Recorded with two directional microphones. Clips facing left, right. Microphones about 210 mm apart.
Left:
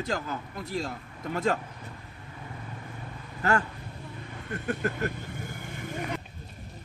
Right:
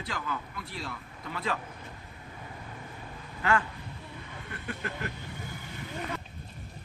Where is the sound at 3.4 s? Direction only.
40° left (ahead or behind).